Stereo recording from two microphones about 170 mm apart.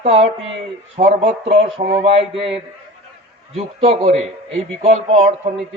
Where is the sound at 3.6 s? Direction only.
35° right (ahead or behind).